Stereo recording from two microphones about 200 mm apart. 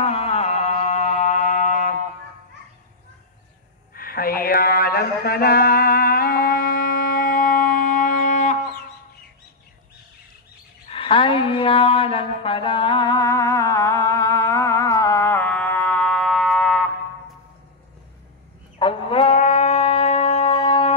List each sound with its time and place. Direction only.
0.0 s music: 30° left (ahead or behind)
3.9 s mantra: 45° left (ahead or behind)
10.9 s a sound: 25° left (ahead or behind); by 16.8 s centre (ahead or behind)
18.8 s music: 25° left (ahead or behind)